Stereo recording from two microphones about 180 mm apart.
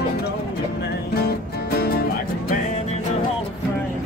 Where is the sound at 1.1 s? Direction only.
60° left (ahead or behind).